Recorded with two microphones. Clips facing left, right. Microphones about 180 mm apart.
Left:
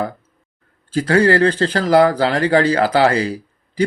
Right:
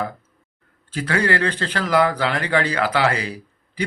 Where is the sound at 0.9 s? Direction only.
35° left (ahead or behind).